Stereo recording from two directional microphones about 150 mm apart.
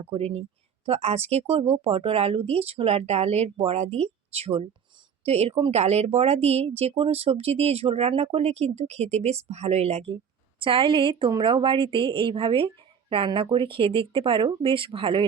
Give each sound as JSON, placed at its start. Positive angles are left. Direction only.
{"t": 0.0, "sound": "a woman's voice", "side_deg": -45}